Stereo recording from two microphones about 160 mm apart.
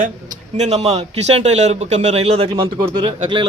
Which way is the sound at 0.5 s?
45° right (ahead or behind).